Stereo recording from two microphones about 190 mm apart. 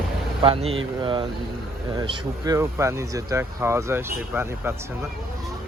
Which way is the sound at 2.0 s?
15° right (ahead or behind).